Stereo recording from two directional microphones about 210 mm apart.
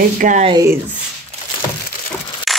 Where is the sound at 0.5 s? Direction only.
15° right (ahead or behind).